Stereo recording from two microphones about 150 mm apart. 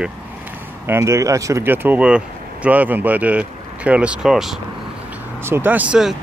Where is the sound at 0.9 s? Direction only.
20° right (ahead or behind).